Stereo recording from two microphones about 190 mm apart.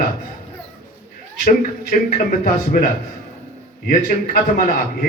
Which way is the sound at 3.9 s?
50° left (ahead or behind).